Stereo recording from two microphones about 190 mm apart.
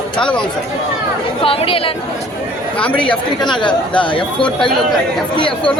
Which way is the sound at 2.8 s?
5° left (ahead or behind).